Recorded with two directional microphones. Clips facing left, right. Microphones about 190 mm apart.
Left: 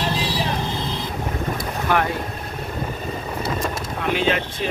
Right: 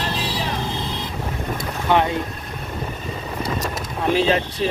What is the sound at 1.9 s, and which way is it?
Boat, 20° right (ahead or behind).